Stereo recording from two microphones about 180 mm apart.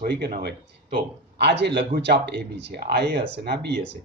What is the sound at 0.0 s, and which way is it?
Speech, 60° right (ahead or behind).